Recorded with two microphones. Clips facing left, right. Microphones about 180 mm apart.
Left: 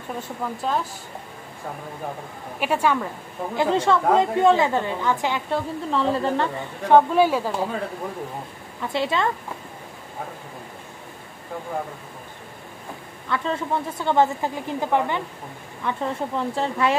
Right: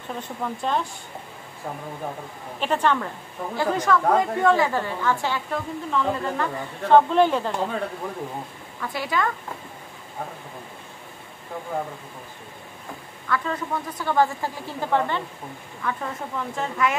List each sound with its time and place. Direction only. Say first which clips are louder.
0.2 s speech: right 1 dB; 5° left (ahead or behind)
2.6 s speech: left 1 dB; 10° left (ahead or behind)
3.5 s speech: left 2 dB; 25° left (ahead or behind)
5.5 s speech: left 2 dB; 30° left (ahead or behind)
6.9 s speech: even; 10° left (ahead or behind)
8.8 s speech: left 3 dB; 25° left (ahead or behind)
13.3 s speech: left 2 dB; 25° left (ahead or behind)